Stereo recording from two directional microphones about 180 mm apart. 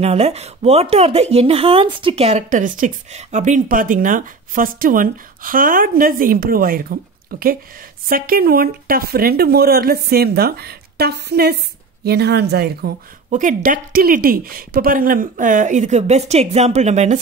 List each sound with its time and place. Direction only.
0.0 s speech: 35° right (ahead or behind); by 12.9 s 65° right (ahead or behind)
13.3 s speech: 45° right (ahead or behind)